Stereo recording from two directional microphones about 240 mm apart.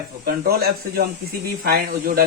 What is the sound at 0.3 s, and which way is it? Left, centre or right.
Speech, right.